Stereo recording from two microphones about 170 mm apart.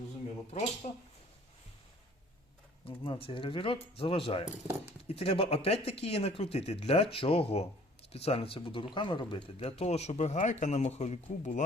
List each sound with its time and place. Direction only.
0.8 s speech: 40° left (ahead or behind)
2.8 s speech: 35° left (ahead or behind)